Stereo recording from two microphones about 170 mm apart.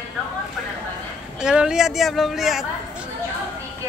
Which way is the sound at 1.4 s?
5° right (ahead or behind).